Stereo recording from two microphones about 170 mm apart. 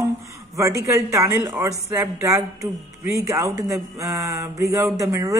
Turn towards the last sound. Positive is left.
turn(degrees=-20)  # may be behind; listen again after turning